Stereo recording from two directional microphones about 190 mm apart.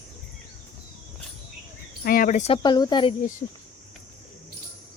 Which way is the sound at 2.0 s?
50° left (ahead or behind).